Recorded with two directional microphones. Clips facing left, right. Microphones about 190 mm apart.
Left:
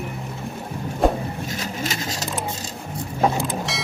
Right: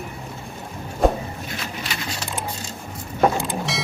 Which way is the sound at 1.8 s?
40° left (ahead or behind).